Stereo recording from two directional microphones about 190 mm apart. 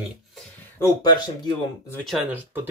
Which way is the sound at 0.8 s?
20° left (ahead or behind).